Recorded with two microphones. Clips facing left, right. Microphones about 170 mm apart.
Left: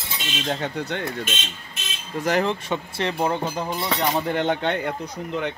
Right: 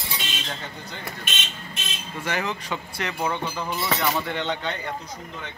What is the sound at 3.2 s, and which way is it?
Speech, 40° left (ahead or behind).